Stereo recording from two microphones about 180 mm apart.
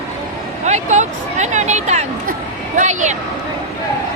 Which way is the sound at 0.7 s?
40° right (ahead or behind).